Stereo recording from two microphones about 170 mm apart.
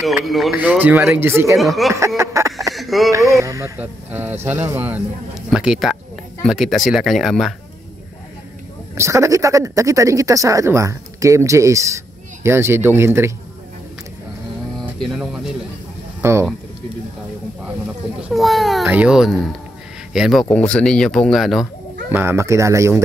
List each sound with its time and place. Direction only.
0.0 s speech: centre (ahead or behind)
1.6 s speech: centre (ahead or behind)
1.9 s a sound: 15° right (ahead or behind)
2.7 s a sound: centre (ahead or behind)
3.1 s speech: 20° right (ahead or behind); by 7.5 s centre (ahead or behind)
8.9 s speech: 15° right (ahead or behind)
14.8 s speech: centre (ahead or behind)
16.2 s speech: 15° right (ahead or behind)
18.3 s speech: centre (ahead or behind)
22.1 s speech: 15° right (ahead or behind)